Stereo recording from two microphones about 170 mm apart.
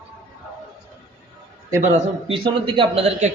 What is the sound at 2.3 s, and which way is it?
Speech, 30° right (ahead or behind).